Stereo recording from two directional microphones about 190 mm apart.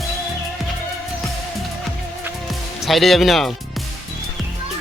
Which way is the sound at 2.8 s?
Centre (ahead or behind).